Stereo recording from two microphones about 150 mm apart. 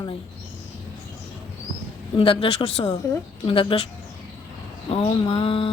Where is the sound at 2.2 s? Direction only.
35° left (ahead or behind).